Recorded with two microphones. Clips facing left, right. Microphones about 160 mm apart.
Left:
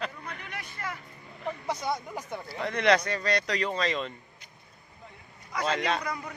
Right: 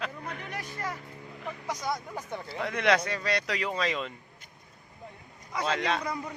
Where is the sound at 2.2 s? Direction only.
10° left (ahead or behind).